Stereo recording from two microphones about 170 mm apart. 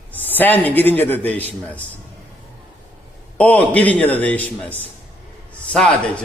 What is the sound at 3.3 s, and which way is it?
A man's voice, 10° left (ahead or behind).